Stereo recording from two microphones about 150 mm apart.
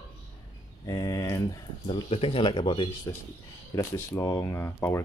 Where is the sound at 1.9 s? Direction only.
40° left (ahead or behind).